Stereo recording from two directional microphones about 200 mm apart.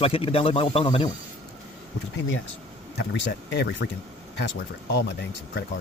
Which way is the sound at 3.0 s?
60° left (ahead or behind).